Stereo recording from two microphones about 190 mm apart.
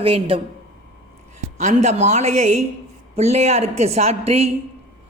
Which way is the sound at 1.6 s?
40° right (ahead or behind).